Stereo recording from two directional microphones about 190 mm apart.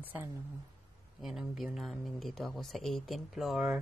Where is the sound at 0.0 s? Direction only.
10° right (ahead or behind).